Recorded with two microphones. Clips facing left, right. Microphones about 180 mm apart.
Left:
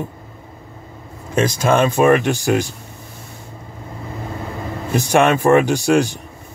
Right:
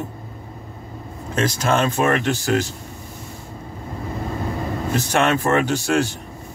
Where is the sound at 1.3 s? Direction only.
10° left (ahead or behind).